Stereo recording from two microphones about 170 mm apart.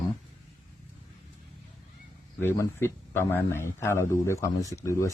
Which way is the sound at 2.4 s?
15° left (ahead or behind).